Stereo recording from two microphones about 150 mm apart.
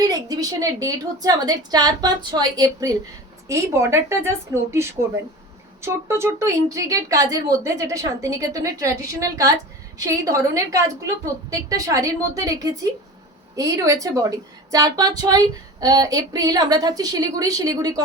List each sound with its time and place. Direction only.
0.0 s a woman's voice: 25° right (ahead or behind)